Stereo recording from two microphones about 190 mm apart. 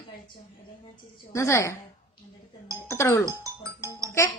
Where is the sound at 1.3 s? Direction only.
15° left (ahead or behind).